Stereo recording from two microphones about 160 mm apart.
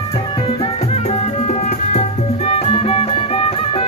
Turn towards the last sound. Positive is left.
turn(degrees=35)  # may be behind; listen again after turning